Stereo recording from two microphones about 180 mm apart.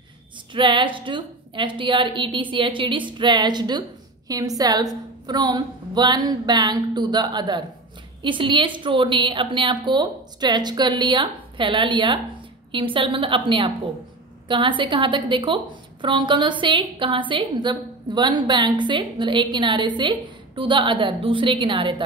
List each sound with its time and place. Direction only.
0.5 s a woman's voice: 25° right (ahead or behind)